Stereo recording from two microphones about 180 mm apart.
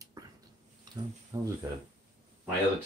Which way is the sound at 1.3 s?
20° right (ahead or behind).